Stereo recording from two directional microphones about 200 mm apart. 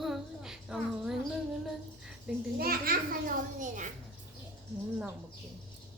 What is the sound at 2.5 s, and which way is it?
Children playing, 45° right (ahead or behind).